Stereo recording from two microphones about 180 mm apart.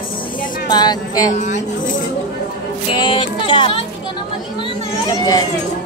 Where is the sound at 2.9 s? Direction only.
30° left (ahead or behind).